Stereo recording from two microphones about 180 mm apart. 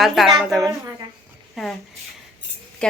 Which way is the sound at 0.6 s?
15° right (ahead or behind).